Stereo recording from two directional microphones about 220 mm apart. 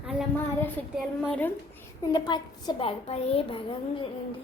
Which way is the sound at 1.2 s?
5° left (ahead or behind).